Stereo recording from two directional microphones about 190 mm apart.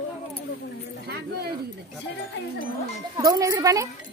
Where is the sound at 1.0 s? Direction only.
60° right (ahead or behind).